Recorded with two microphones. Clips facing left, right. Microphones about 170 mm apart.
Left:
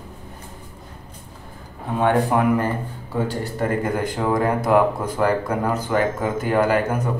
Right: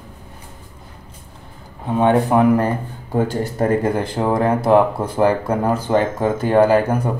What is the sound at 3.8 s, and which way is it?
Speech, 30° right (ahead or behind).